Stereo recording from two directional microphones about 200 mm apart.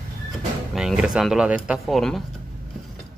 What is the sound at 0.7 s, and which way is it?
Speech, centre (ahead or behind).